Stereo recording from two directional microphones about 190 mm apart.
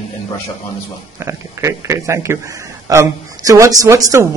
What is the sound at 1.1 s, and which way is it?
A man's voice, 15° right (ahead or behind).